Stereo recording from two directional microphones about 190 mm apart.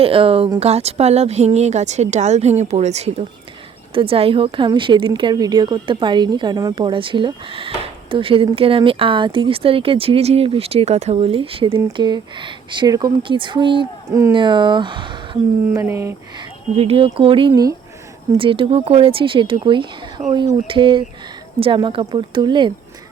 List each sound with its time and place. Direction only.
0.0 s speech: 30° right (ahead or behind); by 16.1 s 15° right (ahead or behind)
16.7 s speech: 30° right (ahead or behind)